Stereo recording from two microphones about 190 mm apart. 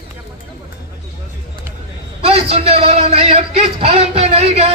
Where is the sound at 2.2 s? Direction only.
30° right (ahead or behind).